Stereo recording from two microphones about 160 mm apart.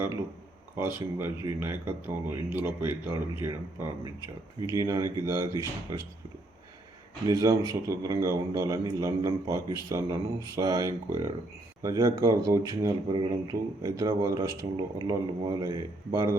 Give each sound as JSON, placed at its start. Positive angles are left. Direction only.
{"t": 0.8, "sound": "a man's voice", "side_deg": -15}
{"t": 7.3, "sound": "a man's voice", "side_deg": -20}